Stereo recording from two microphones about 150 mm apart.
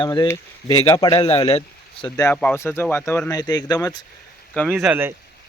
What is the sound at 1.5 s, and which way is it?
Speech, 40° left (ahead or behind).